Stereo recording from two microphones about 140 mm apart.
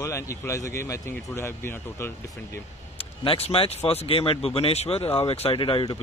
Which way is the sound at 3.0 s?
45° left (ahead or behind).